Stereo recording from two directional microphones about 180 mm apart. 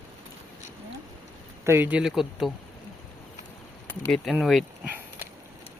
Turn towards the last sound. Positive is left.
turn(degrees=0)  # may be behind; listen again after turning